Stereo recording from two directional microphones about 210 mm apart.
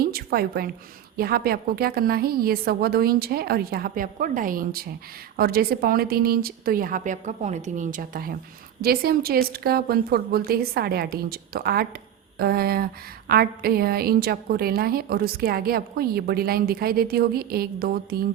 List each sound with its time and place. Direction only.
0.0 s a woman's voice: 45° right (ahead or behind)